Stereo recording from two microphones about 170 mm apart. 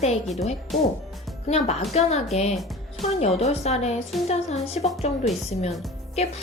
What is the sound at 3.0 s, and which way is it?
A woman's voice, 40° left (ahead or behind).